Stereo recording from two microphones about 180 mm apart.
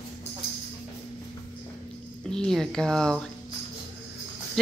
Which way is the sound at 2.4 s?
5° left (ahead or behind).